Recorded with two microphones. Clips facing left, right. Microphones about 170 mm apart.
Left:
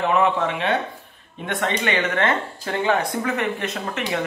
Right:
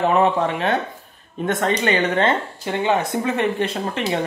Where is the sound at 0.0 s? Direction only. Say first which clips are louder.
Right 2 dB; 35° right (ahead or behind).